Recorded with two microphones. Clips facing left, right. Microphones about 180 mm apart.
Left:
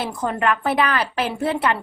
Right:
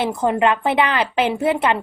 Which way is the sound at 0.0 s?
20° right (ahead or behind).